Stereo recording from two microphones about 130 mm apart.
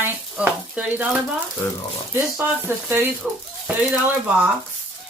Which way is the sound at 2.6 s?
15° right (ahead or behind).